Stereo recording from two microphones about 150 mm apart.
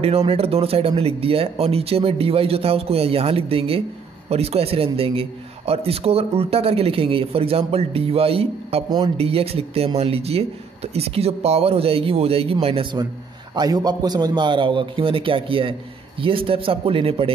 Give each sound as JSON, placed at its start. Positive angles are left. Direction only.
{"t": 0.0, "sound": "a man's voice", "side_deg": -40}
{"t": 13.0, "sound": "a man's voice", "side_deg": -30}